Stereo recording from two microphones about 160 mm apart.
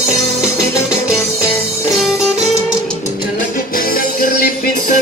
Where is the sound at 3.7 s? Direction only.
65° left (ahead or behind).